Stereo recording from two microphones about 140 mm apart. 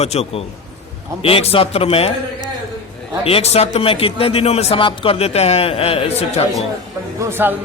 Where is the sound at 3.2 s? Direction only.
45° left (ahead or behind).